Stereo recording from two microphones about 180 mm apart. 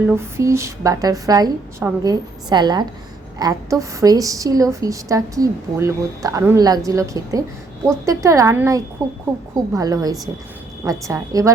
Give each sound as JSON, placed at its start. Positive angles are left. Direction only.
{"t": 0.1, "sound": "a woman's voice", "side_deg": -15}